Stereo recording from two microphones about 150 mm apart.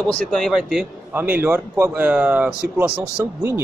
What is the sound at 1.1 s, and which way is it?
Speech, 15° right (ahead or behind).